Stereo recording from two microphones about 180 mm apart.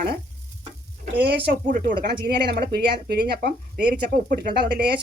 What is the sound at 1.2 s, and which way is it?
Speech, 65° right (ahead or behind).